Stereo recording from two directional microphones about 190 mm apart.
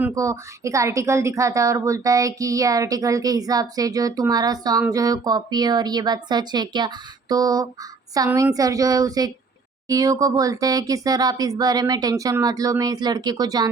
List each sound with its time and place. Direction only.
0.0 s a woman's voice: 15° right (ahead or behind)